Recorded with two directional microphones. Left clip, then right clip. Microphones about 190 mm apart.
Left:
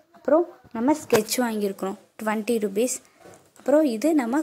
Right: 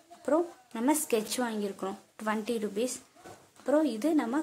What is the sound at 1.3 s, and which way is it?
A woman's voice, 30° left (ahead or behind).